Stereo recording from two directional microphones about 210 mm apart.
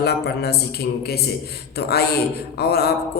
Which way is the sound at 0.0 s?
50° left (ahead or behind).